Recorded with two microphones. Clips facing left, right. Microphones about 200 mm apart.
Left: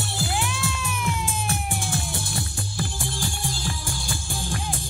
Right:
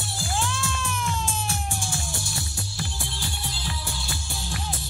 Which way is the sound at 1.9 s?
55° left (ahead or behind).